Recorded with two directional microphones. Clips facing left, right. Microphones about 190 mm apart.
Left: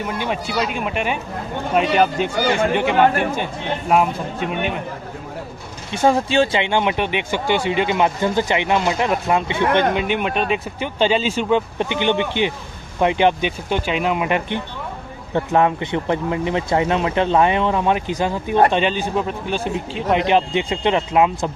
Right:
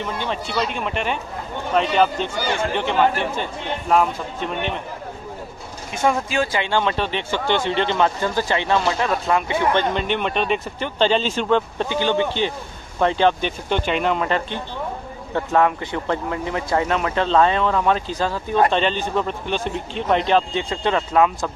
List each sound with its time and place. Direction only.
0.0 s speech: 10° left (ahead or behind)
5.9 s speech: 30° left (ahead or behind)
9.9 s speech: 10° left (ahead or behind)